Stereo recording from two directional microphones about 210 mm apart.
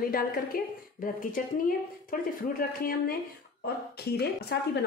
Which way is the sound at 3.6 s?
50° left (ahead or behind).